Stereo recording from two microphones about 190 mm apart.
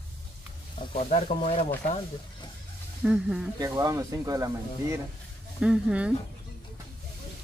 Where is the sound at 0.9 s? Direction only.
40° left (ahead or behind).